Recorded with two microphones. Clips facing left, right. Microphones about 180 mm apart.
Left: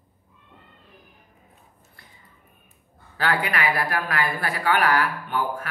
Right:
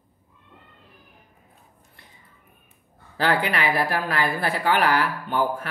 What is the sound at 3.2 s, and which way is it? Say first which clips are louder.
Speech: right 2 dB; 30° right (ahead or behind).